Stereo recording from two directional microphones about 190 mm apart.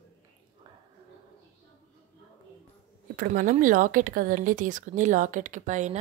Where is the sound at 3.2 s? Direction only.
45° right (ahead or behind).